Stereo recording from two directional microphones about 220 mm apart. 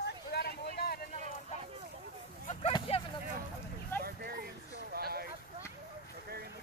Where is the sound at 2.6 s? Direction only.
25° left (ahead or behind).